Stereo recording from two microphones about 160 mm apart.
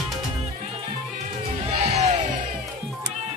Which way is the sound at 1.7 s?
40° right (ahead or behind).